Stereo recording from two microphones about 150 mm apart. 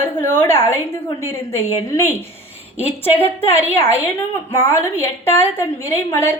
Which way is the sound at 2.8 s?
45° left (ahead or behind).